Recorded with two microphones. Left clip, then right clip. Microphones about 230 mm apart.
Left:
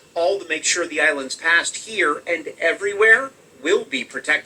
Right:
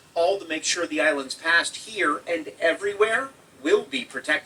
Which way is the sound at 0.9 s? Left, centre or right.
Left.